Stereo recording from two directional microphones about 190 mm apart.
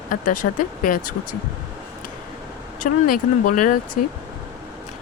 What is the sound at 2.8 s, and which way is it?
Speech, 45° left (ahead or behind).